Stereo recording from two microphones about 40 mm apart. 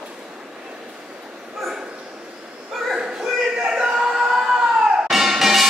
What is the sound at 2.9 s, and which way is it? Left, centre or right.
Children playing, centre.